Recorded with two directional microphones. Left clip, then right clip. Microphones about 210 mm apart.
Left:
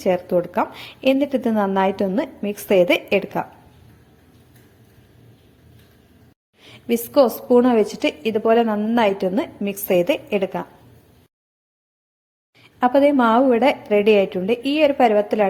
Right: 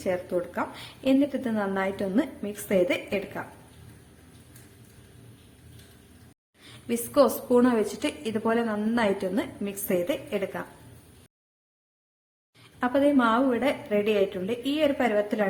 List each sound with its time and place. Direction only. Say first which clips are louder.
0.0 s a woman's voice: left 9 dB; 25° left (ahead or behind)
6.6 s a woman's voice: left 9 dB; 25° left (ahead or behind)
12.8 s a woman's voice: left 7 dB; 25° left (ahead or behind)